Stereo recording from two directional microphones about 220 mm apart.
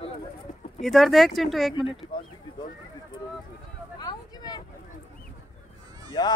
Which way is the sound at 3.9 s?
20° left (ahead or behind).